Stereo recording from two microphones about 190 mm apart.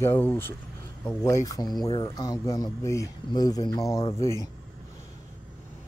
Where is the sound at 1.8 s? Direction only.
30° left (ahead or behind).